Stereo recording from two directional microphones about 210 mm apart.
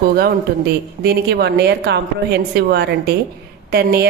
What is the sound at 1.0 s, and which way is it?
A woman's voice, 50° right (ahead or behind).